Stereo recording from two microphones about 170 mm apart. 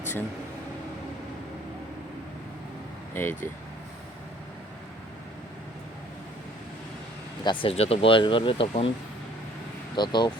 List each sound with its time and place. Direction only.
3.2 s speech: 15° left (ahead or behind)
7.4 s speech: 30° left (ahead or behind)
9.9 s speech: 25° left (ahead or behind)